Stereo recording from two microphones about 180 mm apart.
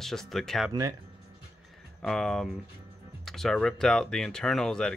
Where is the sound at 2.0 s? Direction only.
5° left (ahead or behind).